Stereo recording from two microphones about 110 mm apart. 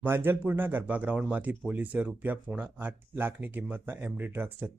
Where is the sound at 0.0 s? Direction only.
20° right (ahead or behind).